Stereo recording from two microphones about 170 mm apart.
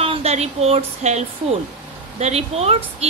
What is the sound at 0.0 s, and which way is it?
Speech, 35° right (ahead or behind).